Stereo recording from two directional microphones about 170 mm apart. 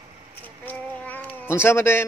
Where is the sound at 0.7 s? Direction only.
10° left (ahead or behind).